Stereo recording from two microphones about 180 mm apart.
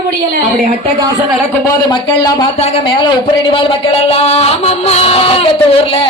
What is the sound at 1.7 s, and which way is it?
Speech, 20° left (ahead or behind).